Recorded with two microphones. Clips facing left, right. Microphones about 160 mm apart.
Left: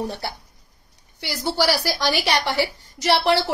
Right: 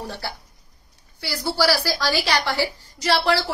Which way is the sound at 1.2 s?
20° left (ahead or behind).